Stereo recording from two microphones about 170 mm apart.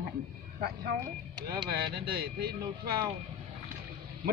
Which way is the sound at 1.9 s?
65° right (ahead or behind).